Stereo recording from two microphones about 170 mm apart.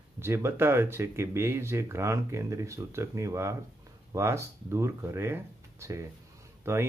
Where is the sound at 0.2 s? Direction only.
15° right (ahead or behind).